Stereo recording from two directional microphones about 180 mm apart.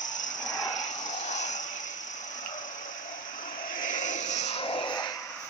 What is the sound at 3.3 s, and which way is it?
Vehicle, 50° left (ahead or behind).